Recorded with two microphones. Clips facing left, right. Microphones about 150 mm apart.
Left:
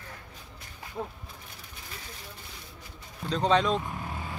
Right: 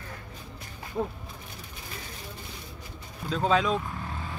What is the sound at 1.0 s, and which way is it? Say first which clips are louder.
Speech: right 6 dB; 25° right (ahead or behind).